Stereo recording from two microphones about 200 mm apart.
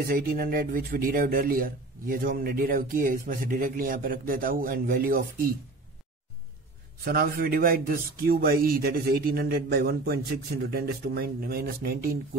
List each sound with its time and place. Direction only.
0.0 s speech: 45° right (ahead or behind)
7.1 s speech: 45° right (ahead or behind)